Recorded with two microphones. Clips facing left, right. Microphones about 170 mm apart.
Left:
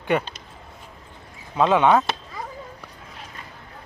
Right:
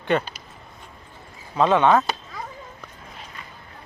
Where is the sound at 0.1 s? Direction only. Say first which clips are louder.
Even; 10° left (ahead or behind).